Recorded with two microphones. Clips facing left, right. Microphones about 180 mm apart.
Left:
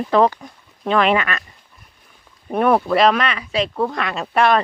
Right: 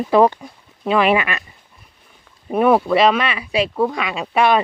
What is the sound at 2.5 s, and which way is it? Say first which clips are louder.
Speech: right 2 dB; 5° right (ahead or behind).